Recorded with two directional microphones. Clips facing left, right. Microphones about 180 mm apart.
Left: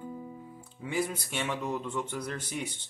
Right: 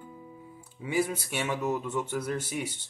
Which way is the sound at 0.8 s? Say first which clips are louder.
Right 3 dB; 10° right (ahead or behind).